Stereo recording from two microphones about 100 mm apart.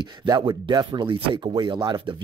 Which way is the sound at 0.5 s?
45° right (ahead or behind).